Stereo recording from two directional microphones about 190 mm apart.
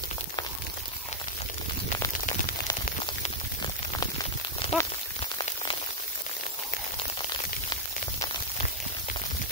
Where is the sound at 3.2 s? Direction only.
25° left (ahead or behind).